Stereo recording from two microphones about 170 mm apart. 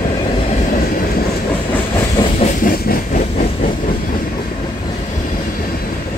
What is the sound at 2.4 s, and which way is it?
Train, 55° left (ahead or behind).